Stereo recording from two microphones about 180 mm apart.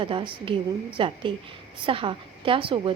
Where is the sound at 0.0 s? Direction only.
30° right (ahead or behind).